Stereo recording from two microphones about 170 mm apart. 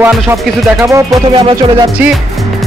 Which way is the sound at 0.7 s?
20° right (ahead or behind).